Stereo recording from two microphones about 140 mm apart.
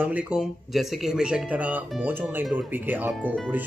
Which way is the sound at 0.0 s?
10° right (ahead or behind).